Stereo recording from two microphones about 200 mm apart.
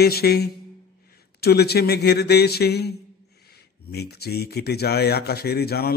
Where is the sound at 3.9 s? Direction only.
55° left (ahead or behind).